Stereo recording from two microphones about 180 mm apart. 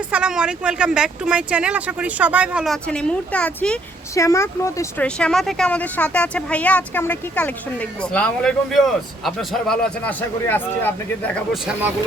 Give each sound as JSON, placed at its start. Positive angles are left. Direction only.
{"t": 0.1, "sound": "speech", "side_deg": -5}
{"t": 2.8, "sound": "speech", "side_deg": 5}
{"t": 4.1, "sound": "speech", "side_deg": 15}
{"t": 5.0, "sound": "speech", "side_deg": 5}